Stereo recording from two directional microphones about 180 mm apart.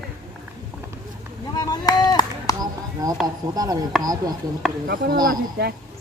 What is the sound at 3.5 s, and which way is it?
Speech, 20° right (ahead or behind).